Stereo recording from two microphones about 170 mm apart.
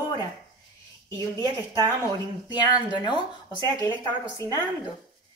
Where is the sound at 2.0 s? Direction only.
25° left (ahead or behind).